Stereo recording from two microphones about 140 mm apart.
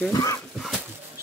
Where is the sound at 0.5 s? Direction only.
Centre (ahead or behind).